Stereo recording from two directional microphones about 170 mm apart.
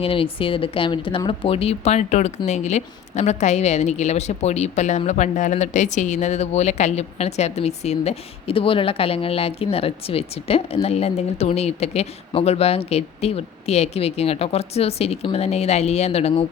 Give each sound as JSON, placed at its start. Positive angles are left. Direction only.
{"t": 0.0, "sound": "a woman's voice", "side_deg": 30}